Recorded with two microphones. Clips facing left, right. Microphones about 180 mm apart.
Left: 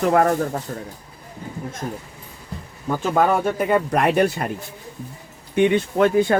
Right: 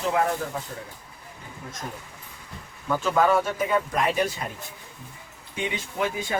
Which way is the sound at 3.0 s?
50° left (ahead or behind).